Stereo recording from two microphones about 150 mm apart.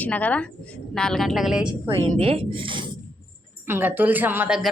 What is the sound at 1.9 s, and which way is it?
A woman's voice, 40° right (ahead or behind).